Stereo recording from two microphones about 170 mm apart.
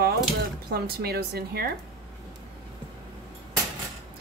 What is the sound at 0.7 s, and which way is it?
Speech, 65° right (ahead or behind).